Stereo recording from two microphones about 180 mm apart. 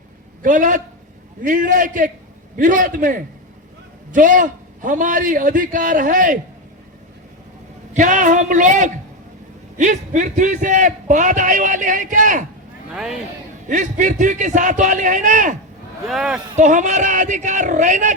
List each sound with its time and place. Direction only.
0.4 s a man's voice: 45° right (ahead or behind)
7.9 s a man's voice: 45° right (ahead or behind)
12.9 s speech: 5° right (ahead or behind)
13.7 s a man's voice: 45° right (ahead or behind)
16.0 s speech: centre (ahead or behind)
16.6 s a man's voice: 45° right (ahead or behind)